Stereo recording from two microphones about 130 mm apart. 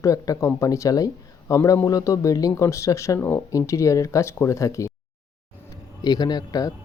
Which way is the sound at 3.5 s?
25° left (ahead or behind).